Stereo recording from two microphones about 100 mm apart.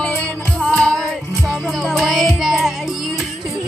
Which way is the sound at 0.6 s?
5° left (ahead or behind).